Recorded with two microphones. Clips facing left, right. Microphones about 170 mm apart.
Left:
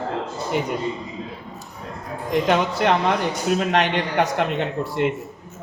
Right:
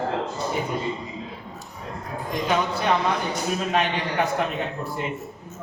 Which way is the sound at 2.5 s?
85° left.